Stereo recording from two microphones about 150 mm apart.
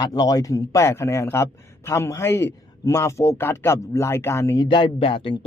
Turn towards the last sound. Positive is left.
turn(degrees=35)  # may be behind; listen again after turning